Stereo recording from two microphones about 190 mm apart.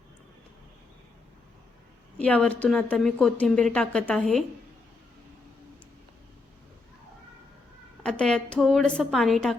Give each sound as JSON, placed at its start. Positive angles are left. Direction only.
{"t": 2.1, "sound": "speech", "side_deg": 5}
{"t": 8.0, "sound": "a woman's voice", "side_deg": 5}